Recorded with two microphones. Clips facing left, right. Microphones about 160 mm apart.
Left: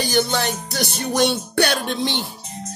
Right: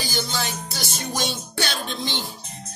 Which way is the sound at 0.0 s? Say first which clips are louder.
Left 8 dB; 65° left (ahead or behind).